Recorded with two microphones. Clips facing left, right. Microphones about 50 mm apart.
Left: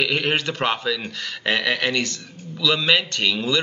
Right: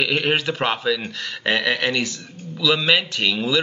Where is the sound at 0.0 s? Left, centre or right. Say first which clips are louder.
Right 1 dB; centre.